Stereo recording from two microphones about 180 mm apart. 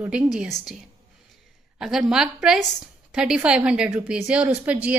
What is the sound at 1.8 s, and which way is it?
A woman's voice, 5° right (ahead or behind).